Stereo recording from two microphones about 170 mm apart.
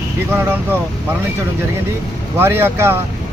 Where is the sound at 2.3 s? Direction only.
15° right (ahead or behind).